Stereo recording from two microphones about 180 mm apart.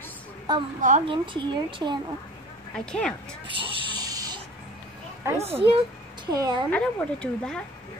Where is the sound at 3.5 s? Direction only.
25° right (ahead or behind).